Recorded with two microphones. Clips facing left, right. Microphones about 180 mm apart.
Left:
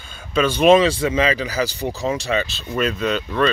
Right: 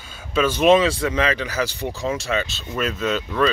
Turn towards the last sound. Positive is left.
turn(degrees=-5)  # may be behind; listen again after turning